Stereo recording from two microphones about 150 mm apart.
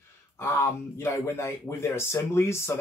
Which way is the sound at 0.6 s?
20° left (ahead or behind).